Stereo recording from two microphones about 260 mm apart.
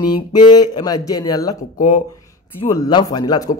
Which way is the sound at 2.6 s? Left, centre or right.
Centre.